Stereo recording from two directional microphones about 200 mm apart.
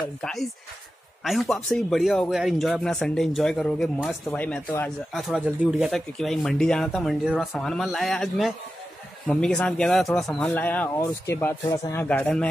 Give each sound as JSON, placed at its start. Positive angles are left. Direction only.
{"t": 0.2, "sound": "speech", "side_deg": 0}